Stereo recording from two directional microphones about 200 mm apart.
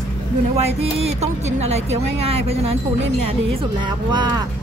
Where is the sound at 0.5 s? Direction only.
30° right (ahead or behind).